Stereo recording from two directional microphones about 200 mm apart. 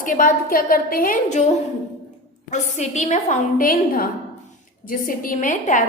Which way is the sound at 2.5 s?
35° left (ahead or behind).